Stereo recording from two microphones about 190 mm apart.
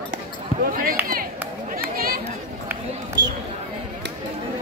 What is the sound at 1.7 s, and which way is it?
Chatter, 50° right (ahead or behind).